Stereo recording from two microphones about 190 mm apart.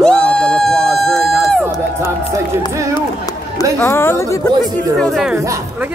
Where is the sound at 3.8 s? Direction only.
10° left (ahead or behind).